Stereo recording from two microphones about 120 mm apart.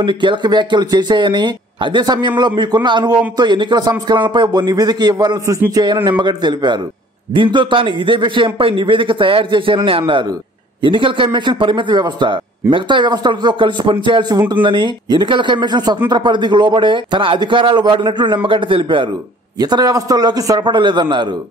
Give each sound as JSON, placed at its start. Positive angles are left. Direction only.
{"t": 0.0, "sound": "a man's voice", "side_deg": -40}
{"t": 19.6, "sound": "a man's voice", "side_deg": -35}